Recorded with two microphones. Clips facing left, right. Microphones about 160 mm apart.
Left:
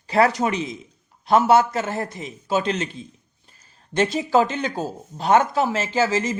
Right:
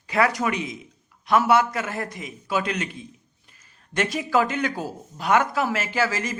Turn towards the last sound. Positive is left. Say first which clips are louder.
# left 4 dB
turn(degrees=25)  # may be behind; listen again after turning